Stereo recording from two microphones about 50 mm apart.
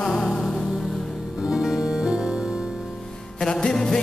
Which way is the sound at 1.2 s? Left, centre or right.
Centre.